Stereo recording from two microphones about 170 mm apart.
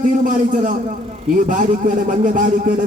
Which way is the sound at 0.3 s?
50° right (ahead or behind).